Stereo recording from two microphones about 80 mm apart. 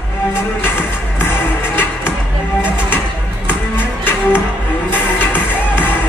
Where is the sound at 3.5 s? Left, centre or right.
Left.